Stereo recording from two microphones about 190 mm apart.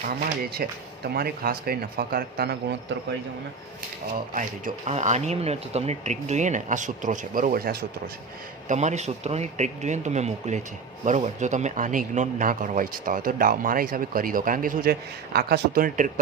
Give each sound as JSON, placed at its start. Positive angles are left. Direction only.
{"t": 0.5, "sound": "speech", "side_deg": -55}
{"t": 4.4, "sound": "speech", "side_deg": -40}
{"t": 8.6, "sound": "speech", "side_deg": -40}